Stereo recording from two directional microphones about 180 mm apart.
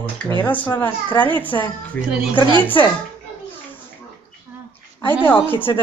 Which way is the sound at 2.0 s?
5° right (ahead or behind).